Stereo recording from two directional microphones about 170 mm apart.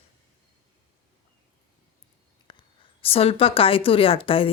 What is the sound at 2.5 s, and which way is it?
Speech, 30° left (ahead or behind).